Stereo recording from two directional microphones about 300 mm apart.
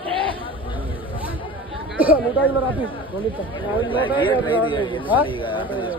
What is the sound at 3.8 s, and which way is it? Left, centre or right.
Speech, centre.